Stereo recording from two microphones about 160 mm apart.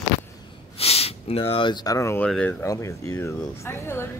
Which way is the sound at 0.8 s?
40° left (ahead or behind).